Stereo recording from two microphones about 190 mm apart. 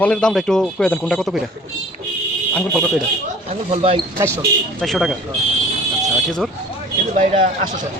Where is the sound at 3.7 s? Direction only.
30° right (ahead or behind).